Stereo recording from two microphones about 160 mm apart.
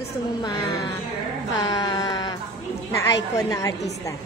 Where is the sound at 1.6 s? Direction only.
25° left (ahead or behind).